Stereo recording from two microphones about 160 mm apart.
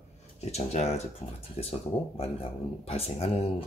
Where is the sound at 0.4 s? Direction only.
40° left (ahead or behind).